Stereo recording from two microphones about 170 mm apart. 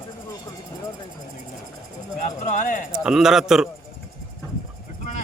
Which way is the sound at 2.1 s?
45° left (ahead or behind).